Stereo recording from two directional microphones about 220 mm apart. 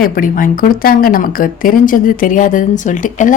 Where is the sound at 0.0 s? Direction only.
40° left (ahead or behind).